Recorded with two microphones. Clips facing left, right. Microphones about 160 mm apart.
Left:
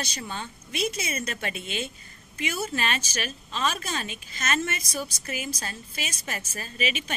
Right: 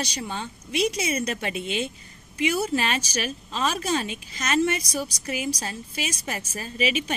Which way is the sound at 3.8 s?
20° right (ahead or behind).